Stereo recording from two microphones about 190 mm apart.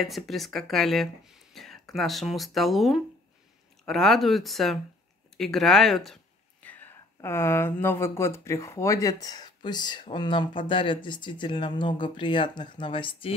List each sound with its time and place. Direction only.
0.0 s speech: centre (ahead or behind); by 13.3 s 25° left (ahead or behind)